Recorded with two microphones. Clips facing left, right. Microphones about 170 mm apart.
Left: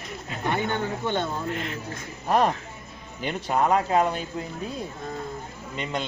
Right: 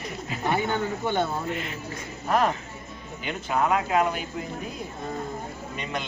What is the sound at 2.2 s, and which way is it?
Speech, 35° left (ahead or behind).